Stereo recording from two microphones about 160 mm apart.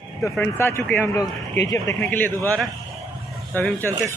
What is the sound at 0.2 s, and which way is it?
Speech, 15° left (ahead or behind).